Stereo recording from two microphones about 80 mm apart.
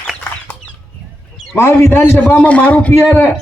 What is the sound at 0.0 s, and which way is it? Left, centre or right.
Chicken, centre.